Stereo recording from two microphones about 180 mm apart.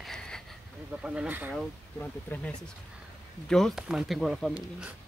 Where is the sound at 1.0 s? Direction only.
10° right (ahead or behind).